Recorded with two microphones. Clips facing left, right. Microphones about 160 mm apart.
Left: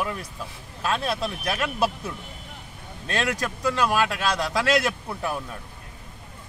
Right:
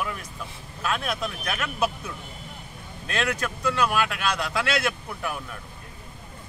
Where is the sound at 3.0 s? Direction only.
35° left (ahead or behind).